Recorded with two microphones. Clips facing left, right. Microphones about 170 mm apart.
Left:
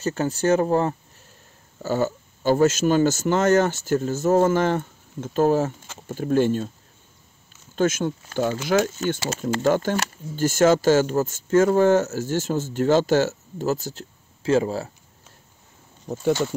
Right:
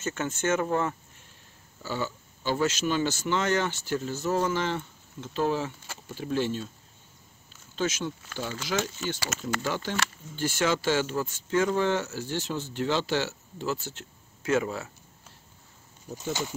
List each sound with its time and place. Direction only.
0.0 s speech: 35° left (ahead or behind)
1.8 s speech: 45° left (ahead or behind)
7.7 s speech: 50° left (ahead or behind); by 14.9 s 35° left (ahead or behind)